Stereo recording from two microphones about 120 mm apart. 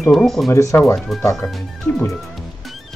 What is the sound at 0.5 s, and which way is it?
Speech, 25° left (ahead or behind).